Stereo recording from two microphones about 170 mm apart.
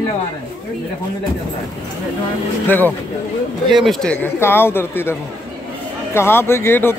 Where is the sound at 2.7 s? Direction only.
10° left (ahead or behind).